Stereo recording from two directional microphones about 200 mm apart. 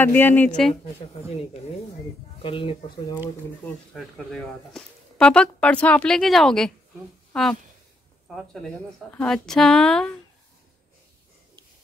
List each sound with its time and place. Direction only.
0.0 s speech: 10° left (ahead or behind)
2.4 s speech: 25° left (ahead or behind)
3.9 s speech: 5° left (ahead or behind)
9.1 s speech: 5° left (ahead or behind)